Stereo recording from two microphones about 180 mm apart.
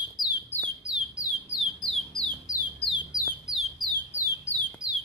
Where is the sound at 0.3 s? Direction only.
10° left (ahead or behind).